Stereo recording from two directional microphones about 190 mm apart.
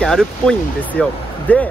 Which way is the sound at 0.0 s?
5° left (ahead or behind).